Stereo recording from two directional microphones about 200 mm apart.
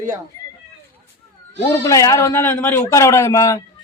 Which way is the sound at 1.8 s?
15° left (ahead or behind).